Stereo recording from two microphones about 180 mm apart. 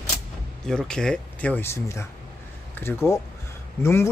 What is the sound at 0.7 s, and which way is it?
Speech, 5° left (ahead or behind).